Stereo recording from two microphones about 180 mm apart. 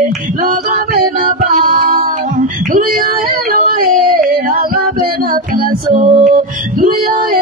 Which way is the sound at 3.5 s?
55° right (ahead or behind).